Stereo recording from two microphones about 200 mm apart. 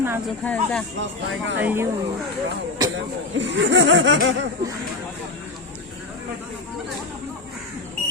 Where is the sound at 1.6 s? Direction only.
10° right (ahead or behind).